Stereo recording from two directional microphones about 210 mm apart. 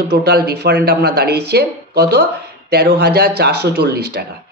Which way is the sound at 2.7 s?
50° right (ahead or behind).